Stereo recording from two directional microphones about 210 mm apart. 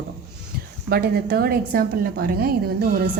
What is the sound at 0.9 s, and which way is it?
A woman's voice, 45° right (ahead or behind).